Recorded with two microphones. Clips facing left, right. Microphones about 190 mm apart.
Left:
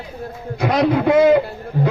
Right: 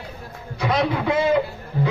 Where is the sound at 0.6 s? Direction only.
50° left (ahead or behind).